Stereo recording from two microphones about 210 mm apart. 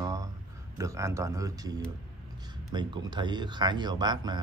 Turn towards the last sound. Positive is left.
turn(degrees=-20)  # may be behind; listen again after turning